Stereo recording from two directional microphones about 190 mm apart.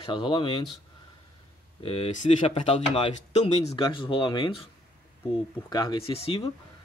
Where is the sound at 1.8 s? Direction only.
30° left (ahead or behind).